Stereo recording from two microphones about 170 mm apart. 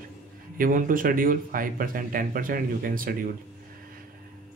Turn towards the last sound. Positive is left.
turn(degrees=-55)  # may be behind; listen again after turning